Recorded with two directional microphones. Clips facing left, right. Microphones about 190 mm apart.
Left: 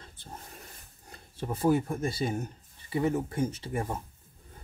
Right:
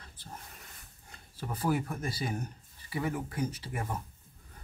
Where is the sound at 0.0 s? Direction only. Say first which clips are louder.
Left 2 dB; 25° left (ahead or behind).